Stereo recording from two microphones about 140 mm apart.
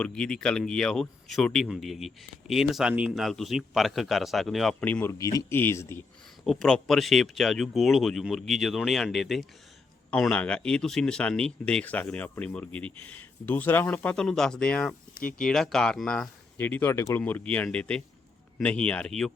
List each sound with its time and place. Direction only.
0.0 s speech: 5° left (ahead or behind)
4.9 s speech: 10° left (ahead or behind)
5.1 s speech: 25° left (ahead or behind)
6.4 s speech: centre (ahead or behind)
15.1 s speech: 75° left (ahead or behind)
15.4 s speech: 5° left (ahead or behind)